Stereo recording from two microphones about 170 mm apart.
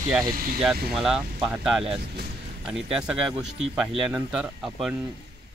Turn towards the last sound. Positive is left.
turn(degrees=-5)  # may be behind; listen again after turning